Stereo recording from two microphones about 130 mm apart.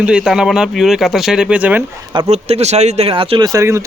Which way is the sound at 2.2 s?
55° right (ahead or behind).